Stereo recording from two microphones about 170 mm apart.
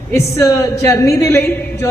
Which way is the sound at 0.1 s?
15° left (ahead or behind).